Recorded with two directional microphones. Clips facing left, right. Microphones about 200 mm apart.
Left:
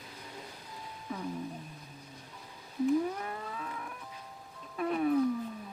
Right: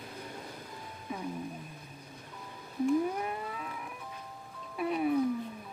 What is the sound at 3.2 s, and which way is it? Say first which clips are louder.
Livestock: right 2 dB; 15° right (ahead or behind).